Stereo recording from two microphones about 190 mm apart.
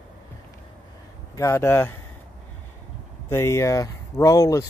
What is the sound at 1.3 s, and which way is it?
Speech, 15° left (ahead or behind).